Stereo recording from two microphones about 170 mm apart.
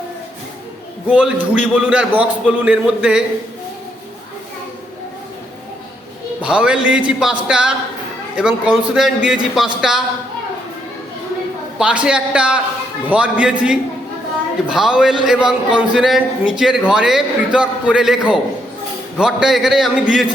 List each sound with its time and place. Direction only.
1.0 s a man's voice: 10° right (ahead or behind)
6.4 s a man's voice: 5° right (ahead or behind)
11.8 s a man's voice: 5° right (ahead or behind)